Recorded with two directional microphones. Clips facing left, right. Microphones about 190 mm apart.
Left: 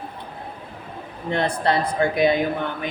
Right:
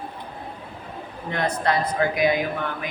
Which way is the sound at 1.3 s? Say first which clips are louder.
Left 2 dB; 30° left (ahead or behind).